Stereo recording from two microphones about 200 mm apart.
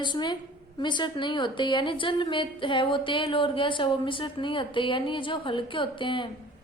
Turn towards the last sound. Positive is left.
turn(degrees=25)  # may be behind; listen again after turning